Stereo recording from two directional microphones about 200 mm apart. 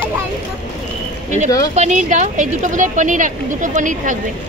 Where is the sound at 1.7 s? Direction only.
35° right (ahead or behind).